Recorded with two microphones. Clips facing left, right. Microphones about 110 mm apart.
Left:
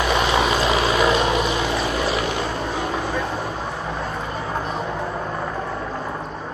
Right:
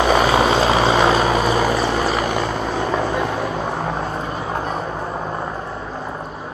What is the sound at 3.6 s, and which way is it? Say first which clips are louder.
Vehicle: right 5 dB; 45° right (ahead or behind).